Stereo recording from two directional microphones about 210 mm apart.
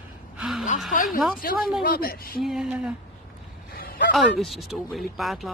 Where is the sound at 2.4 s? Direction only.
Centre (ahead or behind).